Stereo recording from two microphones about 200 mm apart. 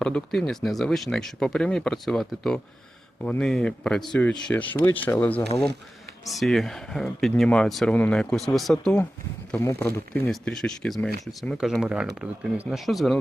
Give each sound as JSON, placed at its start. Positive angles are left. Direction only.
{"t": 0.0, "sound": "speech", "side_deg": 5}